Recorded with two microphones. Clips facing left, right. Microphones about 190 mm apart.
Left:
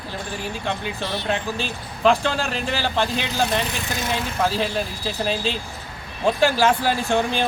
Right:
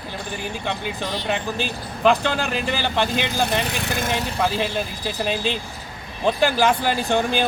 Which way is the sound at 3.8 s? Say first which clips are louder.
Right 2 dB; 60° right (ahead or behind).